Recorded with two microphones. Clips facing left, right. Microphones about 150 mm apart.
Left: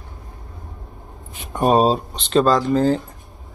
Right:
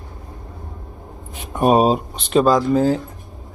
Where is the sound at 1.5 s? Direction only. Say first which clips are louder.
Right 1 dB; 10° right (ahead or behind).